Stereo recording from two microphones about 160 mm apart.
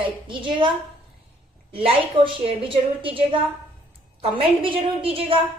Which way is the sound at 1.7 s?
35° right (ahead or behind).